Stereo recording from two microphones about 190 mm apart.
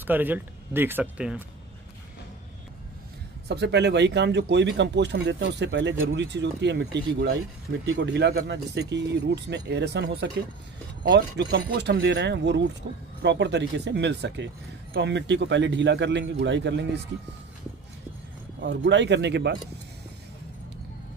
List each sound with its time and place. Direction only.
0.0 s speech: 10° right (ahead or behind)
3.4 s speech: 60° right (ahead or behind)
18.6 s speech: 70° right (ahead or behind)